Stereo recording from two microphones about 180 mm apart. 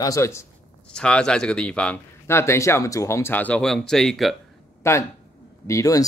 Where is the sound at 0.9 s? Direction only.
5° left (ahead or behind).